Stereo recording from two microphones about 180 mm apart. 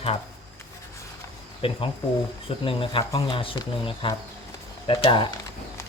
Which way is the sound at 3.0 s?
20° left (ahead or behind).